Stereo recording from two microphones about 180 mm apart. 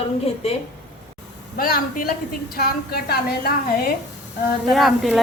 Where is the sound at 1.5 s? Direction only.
55° left (ahead or behind).